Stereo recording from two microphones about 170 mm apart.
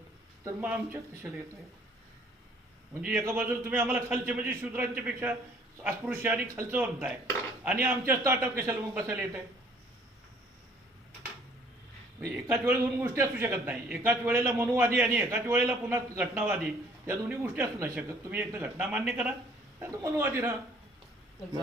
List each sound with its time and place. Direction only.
0.4 s a man's voice: 15° right (ahead or behind)
3.0 s a man's voice: 5° right (ahead or behind)
12.3 s a man's voice: 15° right (ahead or behind)